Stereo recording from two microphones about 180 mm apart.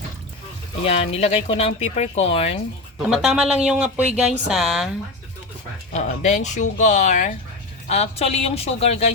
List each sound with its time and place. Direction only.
0.9 s speech: 35° left (ahead or behind)
3.1 s speech: 5° right (ahead or behind)
5.9 s speech: 40° left (ahead or behind)